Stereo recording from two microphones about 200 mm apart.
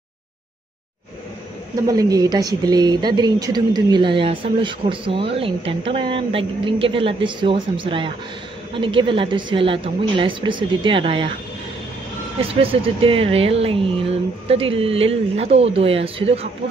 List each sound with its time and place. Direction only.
1.9 s speech: 20° right (ahead or behind)
13.0 s speech: 30° right (ahead or behind)